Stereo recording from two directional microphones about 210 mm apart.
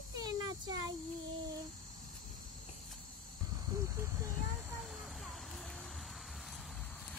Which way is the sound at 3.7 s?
15° right (ahead or behind).